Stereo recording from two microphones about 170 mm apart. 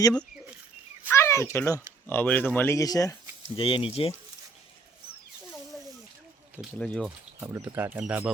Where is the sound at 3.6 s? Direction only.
30° left (ahead or behind).